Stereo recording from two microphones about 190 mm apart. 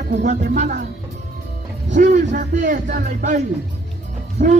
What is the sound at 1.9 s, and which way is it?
Speech, 40° right (ahead or behind).